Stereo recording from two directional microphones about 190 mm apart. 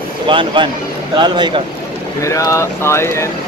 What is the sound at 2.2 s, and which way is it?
Speech, 15° left (ahead or behind).